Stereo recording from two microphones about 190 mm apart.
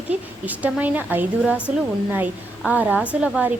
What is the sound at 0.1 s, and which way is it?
A woman's voice, 10° right (ahead or behind).